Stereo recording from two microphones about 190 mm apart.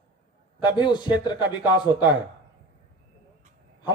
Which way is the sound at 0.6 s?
25° left (ahead or behind).